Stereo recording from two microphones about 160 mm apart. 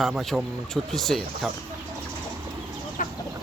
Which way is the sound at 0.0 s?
Centre (ahead or behind).